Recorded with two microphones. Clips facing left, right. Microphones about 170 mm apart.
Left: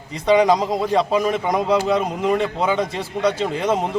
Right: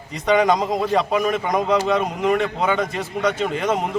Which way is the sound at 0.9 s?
25° left (ahead or behind).